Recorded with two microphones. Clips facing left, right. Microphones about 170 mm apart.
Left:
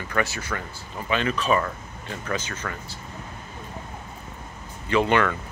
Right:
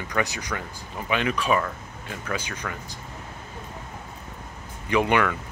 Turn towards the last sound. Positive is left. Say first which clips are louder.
# left 1 dB
turn(degrees=-10)  # may be behind; listen again after turning